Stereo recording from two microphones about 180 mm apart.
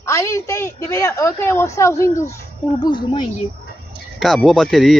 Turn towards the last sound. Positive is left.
turn(degrees=0)  # may be behind; listen again after turning